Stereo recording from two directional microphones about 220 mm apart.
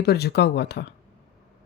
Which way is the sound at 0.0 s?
45° left (ahead or behind).